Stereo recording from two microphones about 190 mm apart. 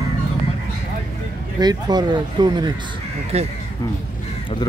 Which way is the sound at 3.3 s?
35° right (ahead or behind).